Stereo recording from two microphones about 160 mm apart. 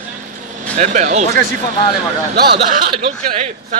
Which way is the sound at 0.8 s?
50° right (ahead or behind).